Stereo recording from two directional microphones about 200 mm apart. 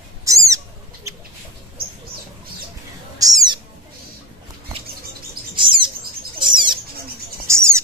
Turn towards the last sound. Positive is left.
turn(degrees=-15)  # may be behind; listen again after turning